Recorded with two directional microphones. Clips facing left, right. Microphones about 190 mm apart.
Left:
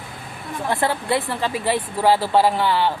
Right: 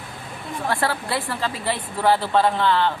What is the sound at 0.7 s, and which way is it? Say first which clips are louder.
Speech: left 4 dB; 20° left (ahead or behind).